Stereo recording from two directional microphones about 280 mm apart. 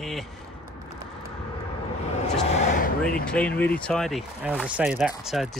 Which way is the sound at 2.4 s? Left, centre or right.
Left.